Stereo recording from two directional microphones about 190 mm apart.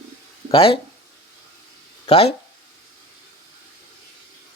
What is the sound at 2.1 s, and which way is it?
Speech, 30° left (ahead or behind).